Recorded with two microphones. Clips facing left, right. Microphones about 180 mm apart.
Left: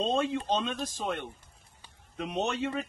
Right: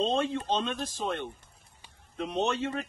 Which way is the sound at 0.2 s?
15° left (ahead or behind).